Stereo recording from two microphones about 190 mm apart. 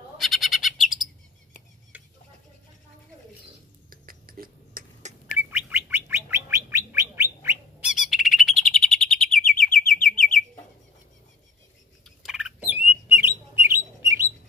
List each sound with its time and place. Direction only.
0.2 s bird: centre (ahead or behind)
1.9 s a sound: 10° right (ahead or behind)
3.9 s a sound: 50° right (ahead or behind)
5.5 s bird: 10° right (ahead or behind)
7.9 s bird: centre (ahead or behind)
12.2 s bird: 5° right (ahead or behind)